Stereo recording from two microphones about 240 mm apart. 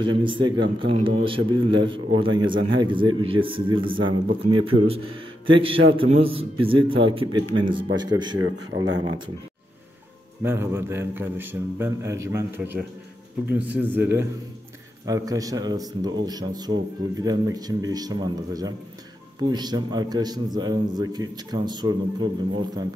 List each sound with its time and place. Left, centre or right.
0.0 s a man's voice: centre
8.7 s a man's voice: right
10.4 s a man's voice: centre